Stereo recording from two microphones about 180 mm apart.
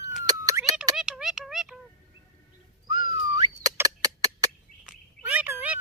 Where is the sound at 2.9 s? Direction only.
20° right (ahead or behind).